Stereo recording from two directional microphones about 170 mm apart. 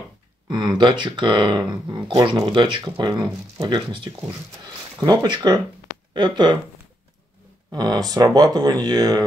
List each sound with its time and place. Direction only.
0.5 s speech: 25° right (ahead or behind)
7.7 s speech: 25° right (ahead or behind)